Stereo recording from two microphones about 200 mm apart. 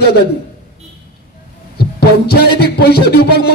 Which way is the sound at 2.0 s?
50° left (ahead or behind).